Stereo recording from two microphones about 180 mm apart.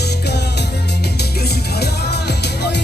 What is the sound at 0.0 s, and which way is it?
Music, 65° left (ahead or behind).